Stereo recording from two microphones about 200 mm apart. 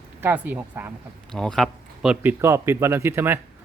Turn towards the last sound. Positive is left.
turn(degrees=-10)  # may be behind; listen again after turning